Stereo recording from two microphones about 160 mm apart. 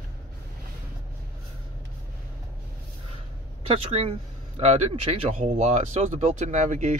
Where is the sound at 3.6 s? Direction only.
35° right (ahead or behind).